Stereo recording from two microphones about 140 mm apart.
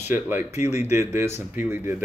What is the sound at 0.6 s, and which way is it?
Speech, 55° left (ahead or behind).